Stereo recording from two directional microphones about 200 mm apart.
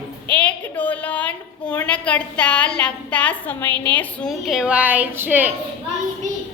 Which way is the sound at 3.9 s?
5° left (ahead or behind).